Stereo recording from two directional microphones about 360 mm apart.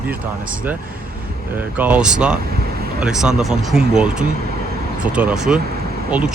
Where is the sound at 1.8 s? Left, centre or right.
Centre.